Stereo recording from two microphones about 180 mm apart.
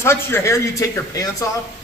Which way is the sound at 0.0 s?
15° left (ahead or behind).